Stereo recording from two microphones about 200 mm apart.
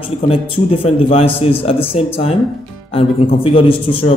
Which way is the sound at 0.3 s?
30° left (ahead or behind).